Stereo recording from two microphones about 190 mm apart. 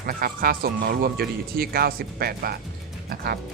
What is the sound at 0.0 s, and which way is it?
Speech, 50° right (ahead or behind).